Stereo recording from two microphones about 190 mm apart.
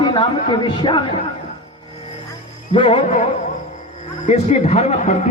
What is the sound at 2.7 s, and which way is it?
Speech, 25° left (ahead or behind).